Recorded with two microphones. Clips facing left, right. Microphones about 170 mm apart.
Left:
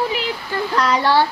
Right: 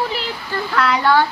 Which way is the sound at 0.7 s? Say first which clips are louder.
Right 1 dB; 35° left (ahead or behind).